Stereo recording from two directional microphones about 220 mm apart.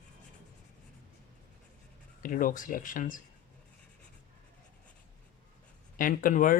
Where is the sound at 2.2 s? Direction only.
40° left (ahead or behind).